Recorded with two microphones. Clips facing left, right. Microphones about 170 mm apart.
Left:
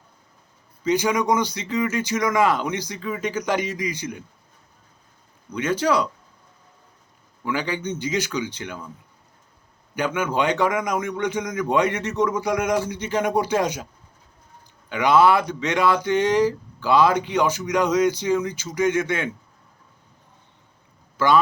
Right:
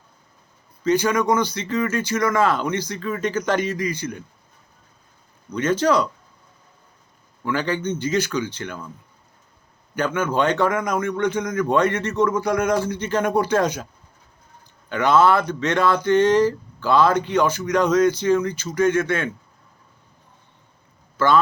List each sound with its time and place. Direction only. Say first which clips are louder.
0.9 s speech: right 2 dB; 15° left (ahead or behind)
5.5 s speech: right 2 dB; 10° left (ahead or behind)
7.4 s speech: right 3 dB; 15° left (ahead or behind)
9.9 s speech: right 2 dB; 15° left (ahead or behind)
14.8 s speech: even; 10° left (ahead or behind)
21.2 s speech: even; 15° left (ahead or behind)